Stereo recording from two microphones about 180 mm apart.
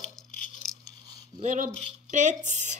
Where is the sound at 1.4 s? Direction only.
45° right (ahead or behind).